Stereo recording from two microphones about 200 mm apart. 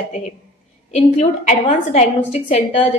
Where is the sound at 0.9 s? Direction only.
35° left (ahead or behind).